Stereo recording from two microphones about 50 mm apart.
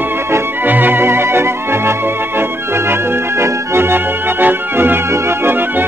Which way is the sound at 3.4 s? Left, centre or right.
Right.